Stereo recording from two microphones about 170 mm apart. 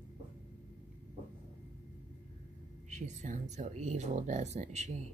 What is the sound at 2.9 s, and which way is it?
Speech, 45° right (ahead or behind).